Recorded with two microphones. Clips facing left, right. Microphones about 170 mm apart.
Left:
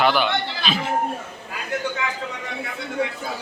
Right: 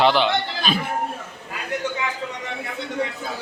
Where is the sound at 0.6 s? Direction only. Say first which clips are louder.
Right 2 dB; 45° right (ahead or behind).